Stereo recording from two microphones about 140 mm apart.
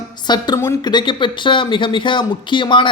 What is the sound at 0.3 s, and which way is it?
Speech, 30° left (ahead or behind).